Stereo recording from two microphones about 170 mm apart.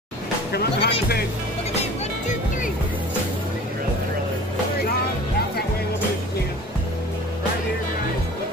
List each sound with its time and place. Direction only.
0.5 s music: 75° left (ahead or behind)
1.8 s music: 45° left (ahead or behind)